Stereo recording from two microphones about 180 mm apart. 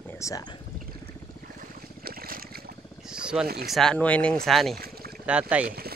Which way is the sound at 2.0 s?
55° right (ahead or behind).